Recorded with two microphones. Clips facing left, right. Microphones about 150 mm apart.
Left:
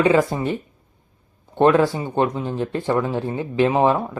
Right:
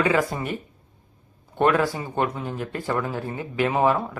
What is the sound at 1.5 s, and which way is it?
Speech, 25° left (ahead or behind).